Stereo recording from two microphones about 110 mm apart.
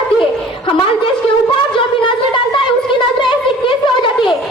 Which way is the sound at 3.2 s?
50° left (ahead or behind).